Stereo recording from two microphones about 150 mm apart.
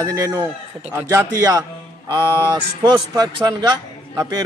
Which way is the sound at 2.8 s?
25° right (ahead or behind).